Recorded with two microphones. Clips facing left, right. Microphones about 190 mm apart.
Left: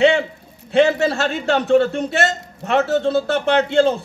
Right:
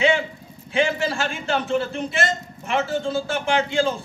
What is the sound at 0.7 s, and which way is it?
A man's voice, 70° left (ahead or behind).